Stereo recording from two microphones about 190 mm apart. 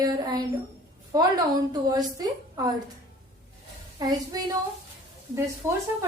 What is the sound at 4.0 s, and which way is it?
Speech, 20° right (ahead or behind).